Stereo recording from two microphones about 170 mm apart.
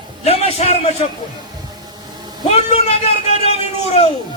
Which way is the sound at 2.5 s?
35° left (ahead or behind).